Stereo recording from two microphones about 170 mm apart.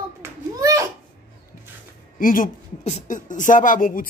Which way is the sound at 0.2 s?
20° right (ahead or behind).